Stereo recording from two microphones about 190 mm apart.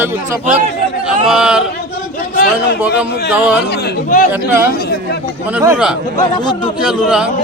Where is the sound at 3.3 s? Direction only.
5° right (ahead or behind).